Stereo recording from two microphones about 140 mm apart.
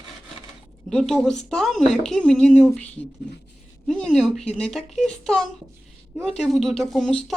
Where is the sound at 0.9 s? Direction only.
Centre (ahead or behind).